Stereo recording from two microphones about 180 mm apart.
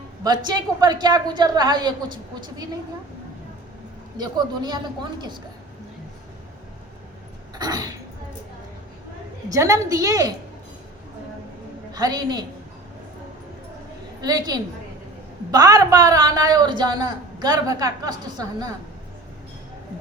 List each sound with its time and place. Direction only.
0.2 s speech: 25° right (ahead or behind)
4.2 s speech: 25° right (ahead or behind)
7.6 s a sound: 20° right (ahead or behind)
9.5 s speech: 20° right (ahead or behind)
11.9 s a woman's voice: 20° right (ahead or behind)
14.2 s a woman's voice: 20° right (ahead or behind)